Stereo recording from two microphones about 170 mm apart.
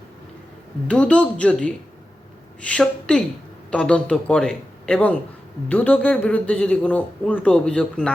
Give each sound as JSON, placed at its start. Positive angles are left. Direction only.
{"t": 0.9, "sound": "a man's voice", "side_deg": 5}